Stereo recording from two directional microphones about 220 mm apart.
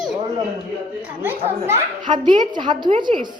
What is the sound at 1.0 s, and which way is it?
A child's voice, 10° right (ahead or behind).